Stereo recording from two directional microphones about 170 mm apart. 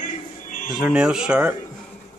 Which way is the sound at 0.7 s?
5° right (ahead or behind).